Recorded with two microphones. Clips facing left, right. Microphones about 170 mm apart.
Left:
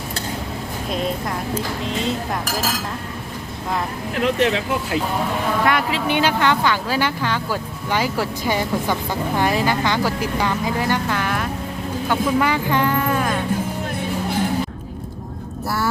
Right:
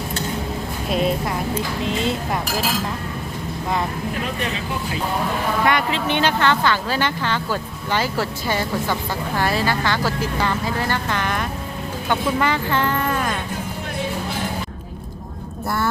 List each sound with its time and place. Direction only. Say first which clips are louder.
4.2 s speech: left 7 dB; 90° left
5.6 s speech: right 1 dB; 5° left (ahead or behind)